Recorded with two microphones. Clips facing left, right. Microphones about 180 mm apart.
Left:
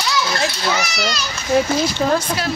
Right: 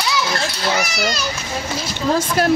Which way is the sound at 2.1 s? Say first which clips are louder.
Right 4 dB; 50° right (ahead or behind).